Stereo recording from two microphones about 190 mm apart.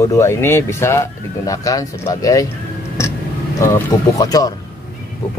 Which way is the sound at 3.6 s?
15° left (ahead or behind).